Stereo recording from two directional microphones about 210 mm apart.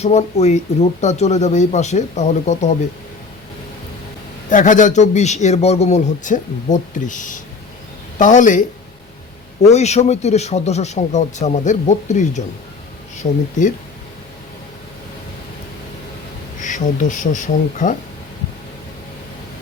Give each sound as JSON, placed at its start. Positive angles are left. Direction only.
{"t": 0.0, "sound": "a man's voice", "side_deg": 30}
{"t": 4.4, "sound": "a man's voice", "side_deg": 35}
{"t": 9.6, "sound": "a man's voice", "side_deg": 30}
{"t": 16.6, "sound": "a man's voice", "side_deg": 35}